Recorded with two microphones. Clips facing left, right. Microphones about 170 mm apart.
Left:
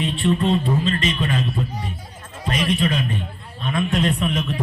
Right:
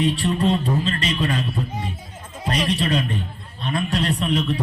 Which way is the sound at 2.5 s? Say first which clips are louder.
Left 1 dB; 35° right (ahead or behind).